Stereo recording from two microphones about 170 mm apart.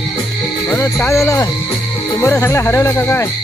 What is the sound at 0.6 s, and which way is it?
Speech, 10° left (ahead or behind).